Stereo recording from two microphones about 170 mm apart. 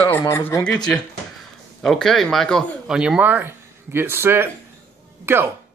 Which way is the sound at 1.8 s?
5° left (ahead or behind).